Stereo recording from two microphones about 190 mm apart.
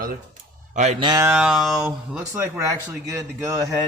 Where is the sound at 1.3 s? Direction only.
5° right (ahead or behind).